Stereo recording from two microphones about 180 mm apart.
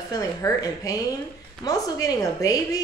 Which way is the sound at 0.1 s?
20° left (ahead or behind).